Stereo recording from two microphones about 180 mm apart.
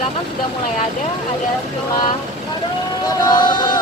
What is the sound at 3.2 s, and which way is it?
Speech, 25° left (ahead or behind).